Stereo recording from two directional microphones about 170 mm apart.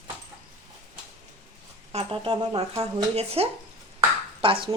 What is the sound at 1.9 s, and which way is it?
Speech, 30° right (ahead or behind).